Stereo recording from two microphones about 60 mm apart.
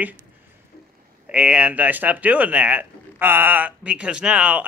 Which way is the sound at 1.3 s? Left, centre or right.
Right.